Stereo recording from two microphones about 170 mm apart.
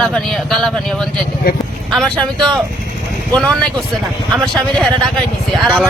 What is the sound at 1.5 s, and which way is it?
Speech, 65° left (ahead or behind).